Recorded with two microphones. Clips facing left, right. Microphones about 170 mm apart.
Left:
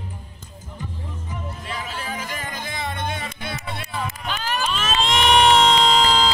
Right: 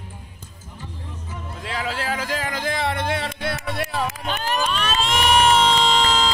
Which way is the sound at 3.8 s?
85° right.